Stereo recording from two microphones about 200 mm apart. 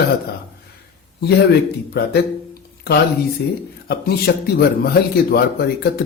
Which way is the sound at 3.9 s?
50° left (ahead or behind).